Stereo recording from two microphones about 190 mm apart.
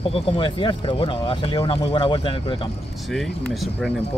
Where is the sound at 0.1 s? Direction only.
25° left (ahead or behind).